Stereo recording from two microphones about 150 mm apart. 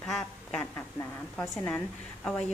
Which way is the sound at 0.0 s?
5° left (ahead or behind).